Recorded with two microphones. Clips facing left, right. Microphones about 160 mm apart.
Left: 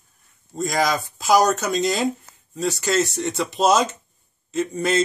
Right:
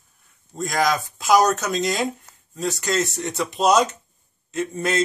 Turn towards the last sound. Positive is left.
turn(degrees=0)  # may be behind; listen again after turning